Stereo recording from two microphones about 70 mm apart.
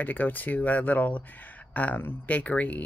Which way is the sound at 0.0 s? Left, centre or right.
Left.